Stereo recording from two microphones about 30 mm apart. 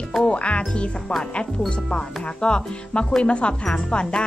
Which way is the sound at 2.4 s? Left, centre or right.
Left.